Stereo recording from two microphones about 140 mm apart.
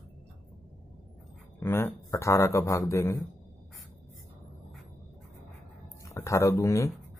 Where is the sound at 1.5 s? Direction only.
15° left (ahead or behind).